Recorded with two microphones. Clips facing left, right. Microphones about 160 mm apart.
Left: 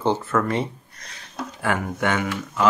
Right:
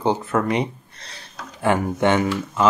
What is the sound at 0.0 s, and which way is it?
Speech, 15° right (ahead or behind).